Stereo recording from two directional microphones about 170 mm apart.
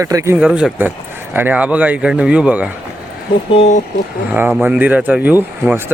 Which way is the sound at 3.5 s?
40° left (ahead or behind).